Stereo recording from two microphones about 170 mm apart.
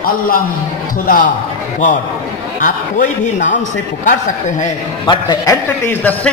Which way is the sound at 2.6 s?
50° left (ahead or behind).